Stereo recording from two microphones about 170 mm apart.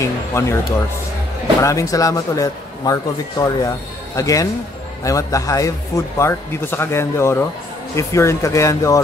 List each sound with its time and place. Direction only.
0.0 s speech: 15° left (ahead or behind)
1.6 s a man's voice: 20° left (ahead or behind)